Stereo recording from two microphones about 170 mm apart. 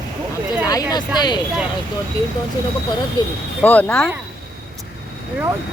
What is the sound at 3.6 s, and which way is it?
Speech, 10° left (ahead or behind).